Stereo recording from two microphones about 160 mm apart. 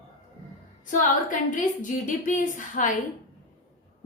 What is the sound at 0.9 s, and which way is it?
Speech, 55° left (ahead or behind).